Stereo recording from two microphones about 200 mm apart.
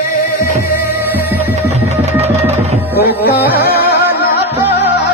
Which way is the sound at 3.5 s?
50° left (ahead or behind).